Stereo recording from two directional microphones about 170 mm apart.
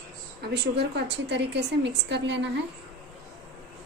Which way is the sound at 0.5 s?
85° right.